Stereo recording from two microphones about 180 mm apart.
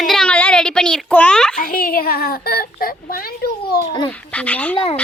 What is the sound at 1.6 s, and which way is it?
A child's voice, 55° left (ahead or behind).